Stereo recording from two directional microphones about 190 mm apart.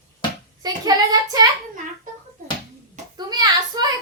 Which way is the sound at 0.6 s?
20° right (ahead or behind).